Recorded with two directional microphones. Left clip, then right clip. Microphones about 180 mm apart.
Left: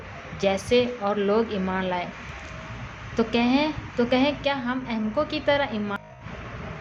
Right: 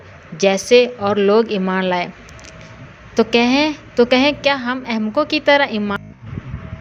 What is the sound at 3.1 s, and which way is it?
A woman's voice, 45° right (ahead or behind).